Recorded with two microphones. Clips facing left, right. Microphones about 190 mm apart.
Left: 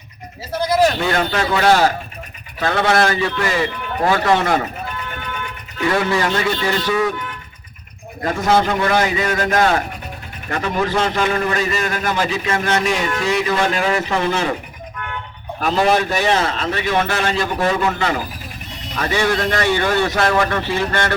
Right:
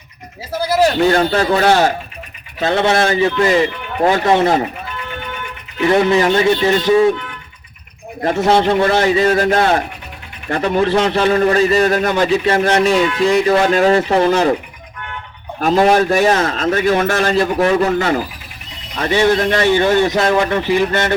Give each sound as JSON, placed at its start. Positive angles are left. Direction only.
{"t": 0.9, "sound": "a man's voice", "side_deg": -35}
{"t": 2.6, "sound": "a man's voice", "side_deg": -20}
{"t": 5.9, "sound": "a man's voice", "side_deg": -20}
{"t": 8.2, "sound": "a man's voice", "side_deg": -30}
{"t": 15.6, "sound": "a man's voice", "side_deg": -40}
{"t": 18.9, "sound": "a man's voice", "side_deg": -25}